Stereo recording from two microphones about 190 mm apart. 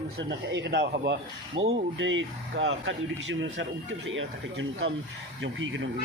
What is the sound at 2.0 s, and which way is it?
Speech, 80° right.